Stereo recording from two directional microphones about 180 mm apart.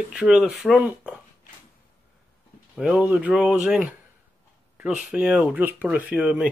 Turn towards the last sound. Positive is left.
turn(degrees=-5)  # may be behind; listen again after turning